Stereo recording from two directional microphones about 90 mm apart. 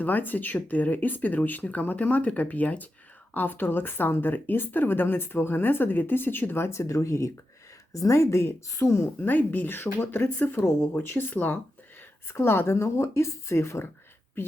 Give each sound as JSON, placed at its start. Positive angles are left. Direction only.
{"t": 0.0, "sound": "speech", "side_deg": 20}